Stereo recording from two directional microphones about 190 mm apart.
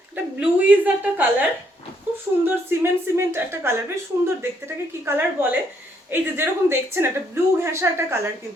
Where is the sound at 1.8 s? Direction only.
30° left (ahead or behind).